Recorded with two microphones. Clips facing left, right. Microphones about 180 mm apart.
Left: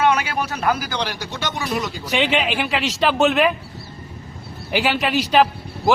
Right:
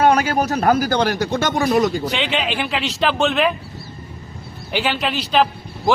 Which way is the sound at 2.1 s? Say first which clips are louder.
Left 2 dB; 10° left (ahead or behind).